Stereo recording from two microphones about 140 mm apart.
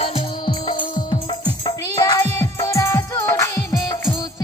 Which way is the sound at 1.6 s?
25° left (ahead or behind).